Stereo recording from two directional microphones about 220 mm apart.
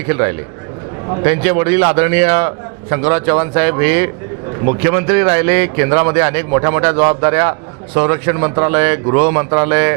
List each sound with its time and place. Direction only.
0.1 s a man's voice: 15° right (ahead or behind)